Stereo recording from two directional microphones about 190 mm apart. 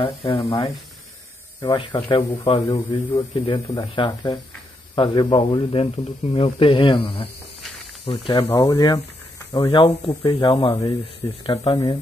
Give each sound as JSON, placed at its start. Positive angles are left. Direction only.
{"t": 0.0, "sound": "speech", "side_deg": 30}